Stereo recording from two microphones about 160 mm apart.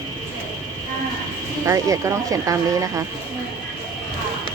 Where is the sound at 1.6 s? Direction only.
20° right (ahead or behind).